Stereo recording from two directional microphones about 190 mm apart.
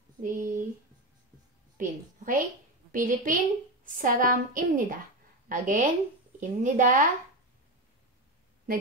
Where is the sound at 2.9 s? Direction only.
45° right (ahead or behind).